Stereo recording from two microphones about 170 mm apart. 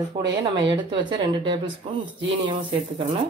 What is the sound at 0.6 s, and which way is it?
A woman's voice, 25° right (ahead or behind).